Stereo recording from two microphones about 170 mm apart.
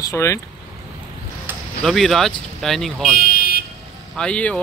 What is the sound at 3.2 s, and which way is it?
Car alarm, 55° left (ahead or behind).